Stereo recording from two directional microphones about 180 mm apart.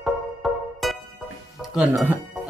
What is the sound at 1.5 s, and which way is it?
Speech, centre (ahead or behind).